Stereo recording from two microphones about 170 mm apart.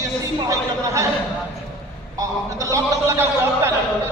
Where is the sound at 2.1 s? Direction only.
20° right (ahead or behind).